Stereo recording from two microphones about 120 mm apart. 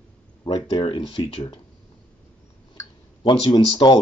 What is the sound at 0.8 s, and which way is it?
Speech, 45° left (ahead or behind).